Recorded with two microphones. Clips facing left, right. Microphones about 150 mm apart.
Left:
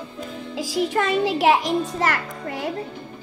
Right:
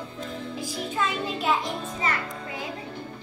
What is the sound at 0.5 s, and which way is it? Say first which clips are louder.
Music: left 10 dB; 90° left.